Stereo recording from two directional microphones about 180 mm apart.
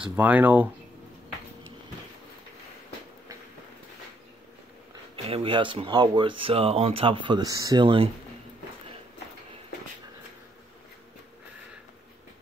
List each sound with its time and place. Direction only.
0.0 s speech: 10° right (ahead or behind)
5.1 s speech: 30° right (ahead or behind)